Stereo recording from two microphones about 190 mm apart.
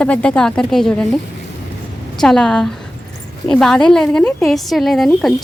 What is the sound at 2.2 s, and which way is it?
A woman's voice, 5° left (ahead or behind).